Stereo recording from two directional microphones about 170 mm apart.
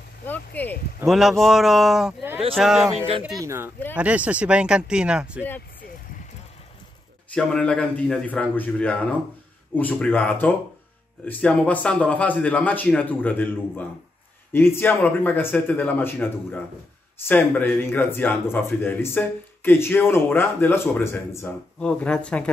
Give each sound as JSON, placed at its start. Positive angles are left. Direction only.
{"t": 0.5, "sound": "speech", "side_deg": 10}
{"t": 1.0, "sound": "speech", "side_deg": 0}
{"t": 3.3, "sound": "speech", "side_deg": -20}
{"t": 7.3, "sound": "speech", "side_deg": 5}